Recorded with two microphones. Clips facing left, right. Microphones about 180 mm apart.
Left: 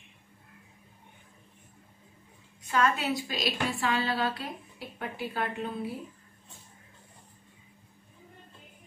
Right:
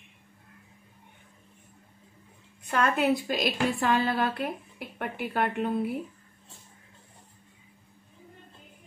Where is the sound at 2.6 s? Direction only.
55° right (ahead or behind).